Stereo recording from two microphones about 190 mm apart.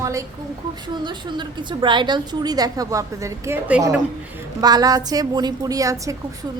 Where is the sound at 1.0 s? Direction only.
25° right (ahead or behind).